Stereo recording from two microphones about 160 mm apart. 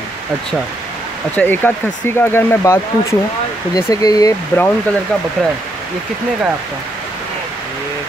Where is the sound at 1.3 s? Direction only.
10° left (ahead or behind).